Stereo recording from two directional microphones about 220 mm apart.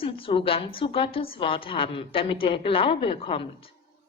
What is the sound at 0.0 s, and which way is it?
A woman's voice, 25° left (ahead or behind).